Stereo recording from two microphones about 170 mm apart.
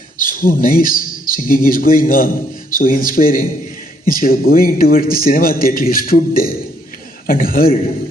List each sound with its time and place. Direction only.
0.2 s a man's voice: 55° left (ahead or behind)